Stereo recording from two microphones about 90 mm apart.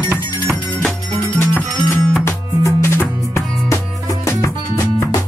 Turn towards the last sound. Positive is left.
turn(degrees=35)  # may be behind; listen again after turning